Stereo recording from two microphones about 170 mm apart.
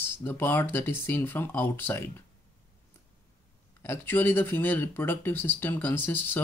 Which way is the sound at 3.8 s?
10° left (ahead or behind).